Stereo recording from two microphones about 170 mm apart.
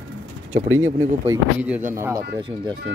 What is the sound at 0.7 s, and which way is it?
Speech, 15° right (ahead or behind).